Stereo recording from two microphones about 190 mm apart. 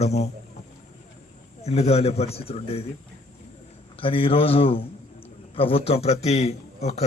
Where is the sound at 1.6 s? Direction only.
35° left (ahead or behind).